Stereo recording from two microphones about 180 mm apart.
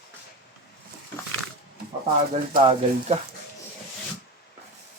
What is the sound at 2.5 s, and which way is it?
Speech, 30° right (ahead or behind).